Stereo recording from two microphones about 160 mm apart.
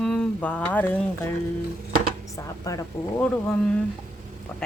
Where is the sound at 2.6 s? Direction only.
20° left (ahead or behind).